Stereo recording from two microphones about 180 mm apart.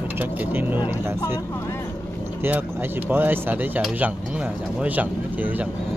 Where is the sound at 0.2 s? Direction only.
10° right (ahead or behind).